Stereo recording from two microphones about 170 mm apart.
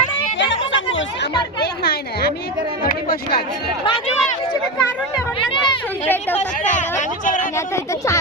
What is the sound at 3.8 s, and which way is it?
Run, 35° left (ahead or behind).